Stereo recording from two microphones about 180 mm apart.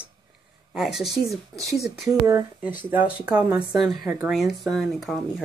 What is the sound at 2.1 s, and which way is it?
Speech, 15° right (ahead or behind).